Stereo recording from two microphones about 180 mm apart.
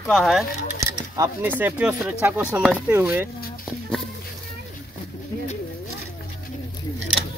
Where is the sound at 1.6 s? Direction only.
10° right (ahead or behind).